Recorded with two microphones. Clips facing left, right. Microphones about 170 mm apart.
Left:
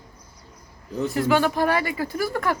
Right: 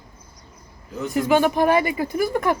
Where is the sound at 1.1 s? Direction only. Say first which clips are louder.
Right 3 dB; 20° right (ahead or behind).